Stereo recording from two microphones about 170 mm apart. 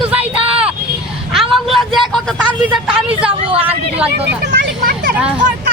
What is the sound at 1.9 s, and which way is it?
Speech, centre (ahead or behind).